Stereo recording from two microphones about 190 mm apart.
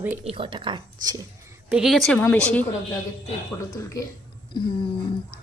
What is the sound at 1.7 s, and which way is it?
A woman's voice, centre (ahead or behind).